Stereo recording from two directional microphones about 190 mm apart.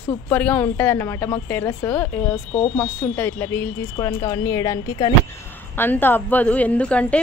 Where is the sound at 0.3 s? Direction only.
10° left (ahead or behind).